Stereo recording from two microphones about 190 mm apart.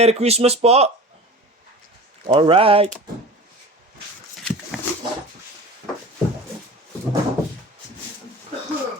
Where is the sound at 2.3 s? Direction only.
30° right (ahead or behind).